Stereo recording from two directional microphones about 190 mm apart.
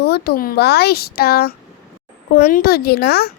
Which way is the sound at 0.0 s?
55° left (ahead or behind).